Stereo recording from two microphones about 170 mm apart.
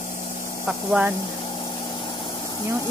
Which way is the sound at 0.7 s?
5° right (ahead or behind).